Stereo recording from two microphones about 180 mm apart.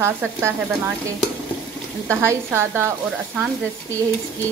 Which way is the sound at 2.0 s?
15° right (ahead or behind).